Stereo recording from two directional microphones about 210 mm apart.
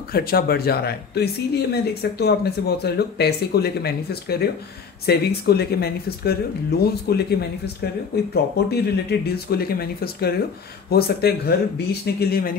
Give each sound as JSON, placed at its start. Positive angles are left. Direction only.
{"t": 0.1, "sound": "speech", "side_deg": 45}